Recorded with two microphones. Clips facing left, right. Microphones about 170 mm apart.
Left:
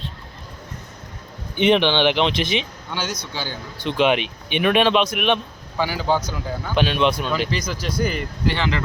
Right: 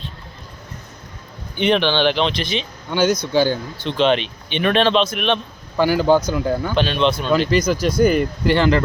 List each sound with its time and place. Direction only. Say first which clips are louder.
1.5 s speech: even; 20° left (ahead or behind)
2.9 s speech: right 12 dB; 50° right (ahead or behind)
3.8 s speech: even; 10° left (ahead or behind)
5.7 s speech: right 7 dB; 50° right (ahead or behind)
6.7 s speech: left 2 dB; 10° left (ahead or behind)
7.5 s speech: right 8 dB; 50° right (ahead or behind)